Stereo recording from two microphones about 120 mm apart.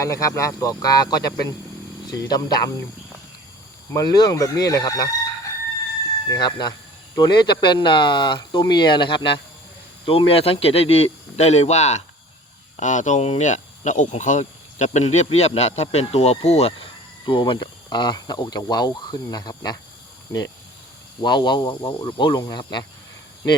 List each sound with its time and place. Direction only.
0.0 s speech: 25° left (ahead or behind)
3.9 s speech: 35° left (ahead or behind)
6.3 s speech: 35° left (ahead or behind); by 12.0 s 70° left (ahead or behind)
12.7 s speech: 90° left; by 16.9 s 60° left (ahead or behind)
17.2 s speech: 45° left (ahead or behind)
21.2 s speech: 40° left (ahead or behind)